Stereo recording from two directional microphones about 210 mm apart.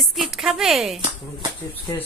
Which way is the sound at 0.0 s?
Centre (ahead or behind).